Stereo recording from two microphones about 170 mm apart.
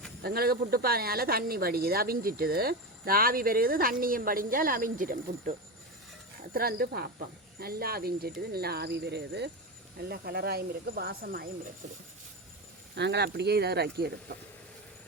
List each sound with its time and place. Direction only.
0.2 s speech: 65° right (ahead or behind); by 9.5 s 80° right
10.0 s speech: 70° right (ahead or behind)
13.0 s speech: 80° right